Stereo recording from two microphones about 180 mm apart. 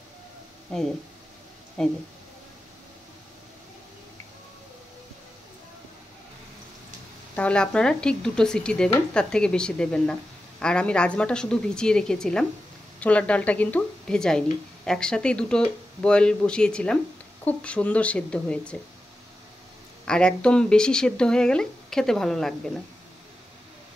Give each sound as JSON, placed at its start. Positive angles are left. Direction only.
{"t": 1.8, "sound": "speech", "side_deg": 5}
{"t": 7.3, "sound": "a woman's voice", "side_deg": 5}
{"t": 20.1, "sound": "speech", "side_deg": 5}